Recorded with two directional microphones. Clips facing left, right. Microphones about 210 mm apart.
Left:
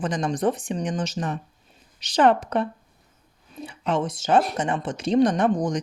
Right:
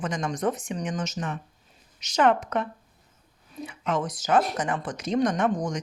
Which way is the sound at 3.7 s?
30° left (ahead or behind).